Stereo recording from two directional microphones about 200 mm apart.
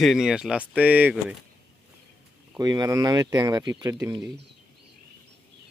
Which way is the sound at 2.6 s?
20° right (ahead or behind).